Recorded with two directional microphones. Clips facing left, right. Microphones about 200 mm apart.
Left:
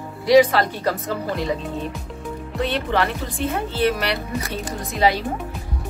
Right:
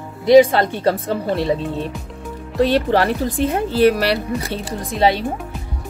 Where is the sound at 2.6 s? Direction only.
35° right (ahead or behind).